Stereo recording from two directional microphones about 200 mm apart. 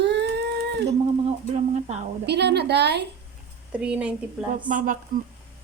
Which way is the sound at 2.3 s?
55° right (ahead or behind).